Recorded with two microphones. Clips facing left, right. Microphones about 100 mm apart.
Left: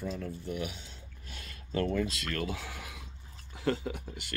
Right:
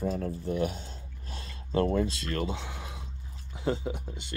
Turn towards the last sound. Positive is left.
turn(degrees=-20)  # may be behind; listen again after turning